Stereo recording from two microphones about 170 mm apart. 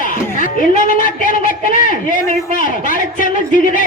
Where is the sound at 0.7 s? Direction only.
55° left (ahead or behind).